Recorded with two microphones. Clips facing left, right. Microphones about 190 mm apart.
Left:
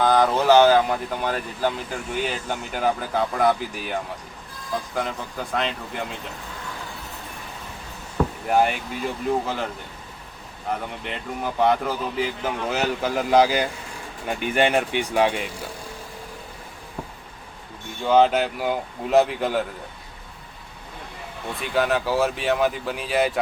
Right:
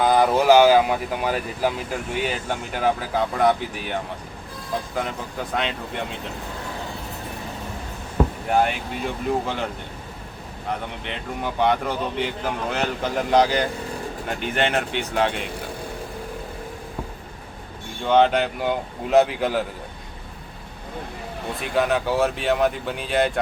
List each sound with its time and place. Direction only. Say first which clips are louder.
0.0 s speech: right 1 dB; 10° right (ahead or behind)
5.5 s speech: even; centre (ahead or behind)
8.4 s speech: left 3 dB; centre (ahead or behind)
11.0 s speech: even; centre (ahead or behind)
18.0 s speech: even; centre (ahead or behind)
21.6 s speech: even; centre (ahead or behind)